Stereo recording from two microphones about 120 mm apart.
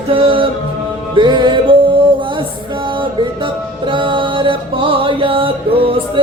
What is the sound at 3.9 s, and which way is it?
Music, 45° right (ahead or behind).